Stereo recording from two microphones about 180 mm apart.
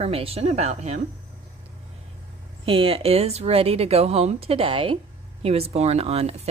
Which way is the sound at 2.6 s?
30° right (ahead or behind).